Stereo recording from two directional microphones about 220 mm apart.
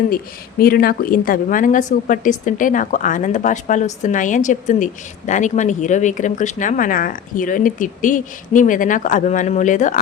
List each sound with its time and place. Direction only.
0.6 s a woman's voice: 40° left (ahead or behind)